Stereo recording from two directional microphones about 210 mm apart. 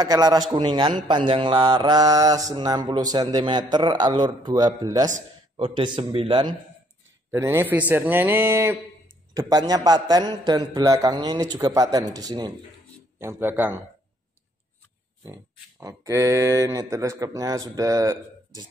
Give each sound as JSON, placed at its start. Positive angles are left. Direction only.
{"t": 0.0, "sound": "mantra", "side_deg": -20}
{"t": 7.2, "sound": "speech", "side_deg": -10}
{"t": 9.3, "sound": "mantra", "side_deg": -20}
{"t": 11.5, "sound": "speech", "side_deg": -15}
{"t": 15.2, "sound": "speech", "side_deg": -15}